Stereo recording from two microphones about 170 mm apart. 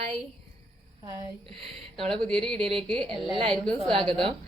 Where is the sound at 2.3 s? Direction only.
5° left (ahead or behind).